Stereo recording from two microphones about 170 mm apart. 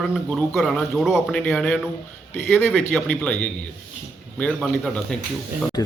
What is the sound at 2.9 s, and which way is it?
Speech, 10° left (ahead or behind).